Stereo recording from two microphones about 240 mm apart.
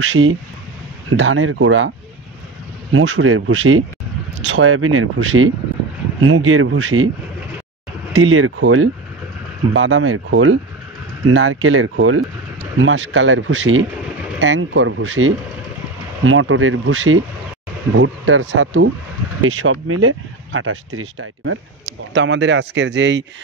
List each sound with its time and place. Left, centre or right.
0.0 s speech: right
8.1 s speech: right